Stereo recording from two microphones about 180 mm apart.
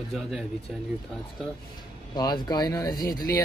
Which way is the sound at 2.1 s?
25° left (ahead or behind).